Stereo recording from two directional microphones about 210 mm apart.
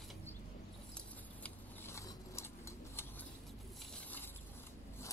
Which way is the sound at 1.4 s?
10° left (ahead or behind).